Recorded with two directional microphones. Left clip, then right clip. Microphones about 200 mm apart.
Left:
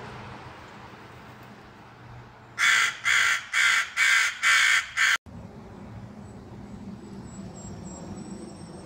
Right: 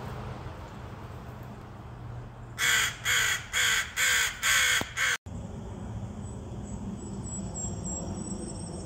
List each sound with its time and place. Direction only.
2.6 s crow: 30° right (ahead or behind)